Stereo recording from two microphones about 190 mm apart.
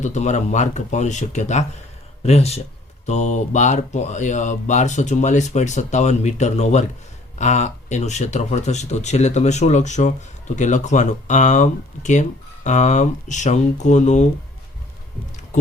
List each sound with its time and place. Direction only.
0.0 s speech: 40° left (ahead or behind)